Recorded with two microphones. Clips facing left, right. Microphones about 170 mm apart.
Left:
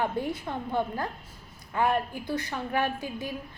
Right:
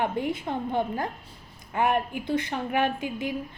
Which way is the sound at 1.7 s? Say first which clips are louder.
Right 1 dB; 20° right (ahead or behind).